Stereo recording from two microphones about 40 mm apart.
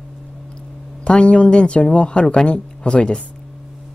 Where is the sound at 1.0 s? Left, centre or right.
Left.